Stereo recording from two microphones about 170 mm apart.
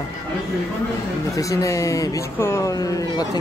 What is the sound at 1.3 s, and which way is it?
Speech, 20° left (ahead or behind).